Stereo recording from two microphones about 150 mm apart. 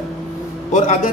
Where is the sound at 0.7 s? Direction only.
50° left (ahead or behind).